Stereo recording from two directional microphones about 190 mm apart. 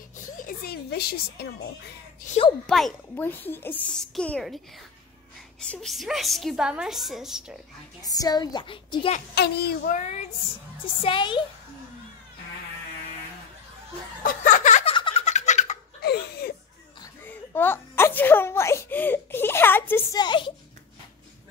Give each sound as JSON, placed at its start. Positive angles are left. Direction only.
{"t": 0.4, "sound": "speech", "side_deg": 50}
{"t": 2.6, "sound": "a child's voice", "side_deg": 5}
{"t": 5.6, "sound": "a child's voice", "side_deg": 5}
{"t": 8.0, "sound": "a woman's voice", "side_deg": 20}
{"t": 9.3, "sound": "a child's voice", "side_deg": 60}
{"t": 9.9, "sound": "child singing", "side_deg": 40}
{"t": 11.0, "sound": "a woman's voice", "side_deg": 25}
{"t": 14.2, "sound": "chuckle", "side_deg": 40}
{"t": 15.0, "sound": "giggle", "side_deg": 30}
{"t": 16.0, "sound": "laughter", "side_deg": 55}
{"t": 17.0, "sound": "speech", "side_deg": 15}